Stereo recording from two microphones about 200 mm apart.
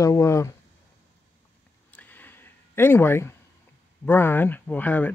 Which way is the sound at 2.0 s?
10° left (ahead or behind).